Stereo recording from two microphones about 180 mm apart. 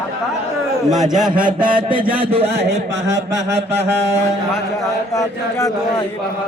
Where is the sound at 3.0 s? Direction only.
15° right (ahead or behind).